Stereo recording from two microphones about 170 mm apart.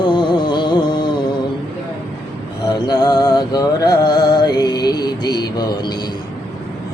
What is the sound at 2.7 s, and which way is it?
Music, 25° left (ahead or behind).